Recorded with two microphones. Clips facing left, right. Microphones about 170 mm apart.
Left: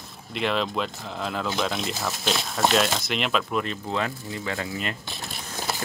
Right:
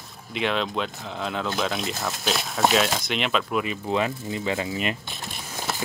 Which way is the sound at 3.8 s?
15° right (ahead or behind).